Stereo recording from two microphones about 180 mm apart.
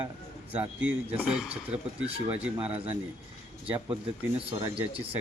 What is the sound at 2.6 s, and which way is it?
Speech, 35° right (ahead or behind).